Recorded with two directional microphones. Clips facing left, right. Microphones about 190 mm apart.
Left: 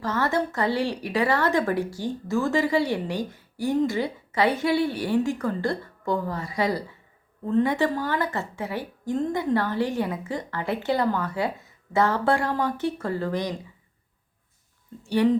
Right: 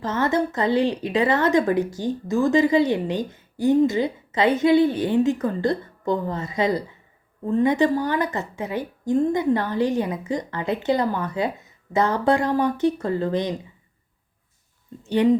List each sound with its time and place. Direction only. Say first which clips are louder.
0.0 s speech: right 3 dB; 20° right (ahead or behind)
15.0 s speech: right 3 dB; 20° right (ahead or behind)